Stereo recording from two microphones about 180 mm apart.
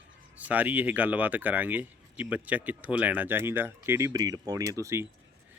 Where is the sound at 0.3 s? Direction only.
10° right (ahead or behind).